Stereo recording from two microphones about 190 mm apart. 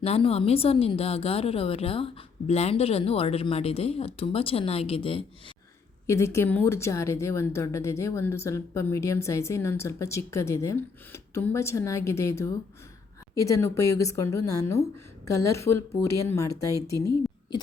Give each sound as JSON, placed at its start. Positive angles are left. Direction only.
{"t": 0.0, "sound": "speech", "side_deg": 30}
{"t": 6.1, "sound": "a woman's voice", "side_deg": 15}